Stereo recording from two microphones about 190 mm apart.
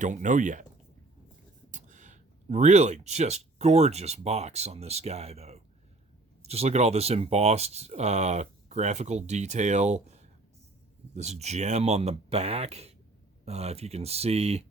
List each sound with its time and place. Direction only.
0.0 s speech: 40° right (ahead or behind)
1.7 s speech: 40° right (ahead or behind)